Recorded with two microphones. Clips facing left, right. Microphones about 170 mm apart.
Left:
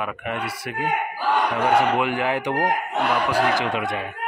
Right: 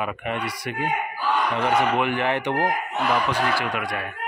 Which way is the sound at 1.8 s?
10° left (ahead or behind).